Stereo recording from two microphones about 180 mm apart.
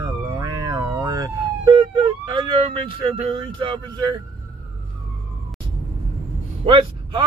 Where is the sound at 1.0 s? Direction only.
20° right (ahead or behind).